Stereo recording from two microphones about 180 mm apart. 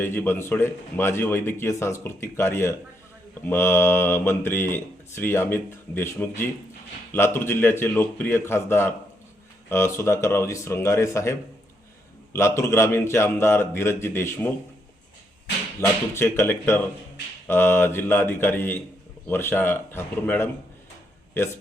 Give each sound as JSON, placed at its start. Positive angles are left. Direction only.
{"t": 0.0, "sound": "speech", "side_deg": 10}
{"t": 16.1, "sound": "speech", "side_deg": 15}